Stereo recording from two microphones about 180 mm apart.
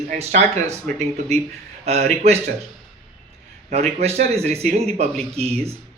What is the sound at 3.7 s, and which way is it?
Speech, 35° right (ahead or behind).